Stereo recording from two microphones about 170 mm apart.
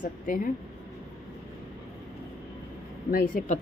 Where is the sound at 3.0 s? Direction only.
55° left (ahead or behind).